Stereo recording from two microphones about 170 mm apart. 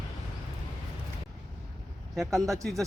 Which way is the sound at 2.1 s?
Centre (ahead or behind).